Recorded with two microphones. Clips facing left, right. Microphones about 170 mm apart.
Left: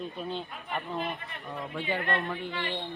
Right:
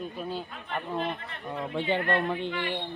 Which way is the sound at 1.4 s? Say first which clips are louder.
Right 4 dB; 20° right (ahead or behind).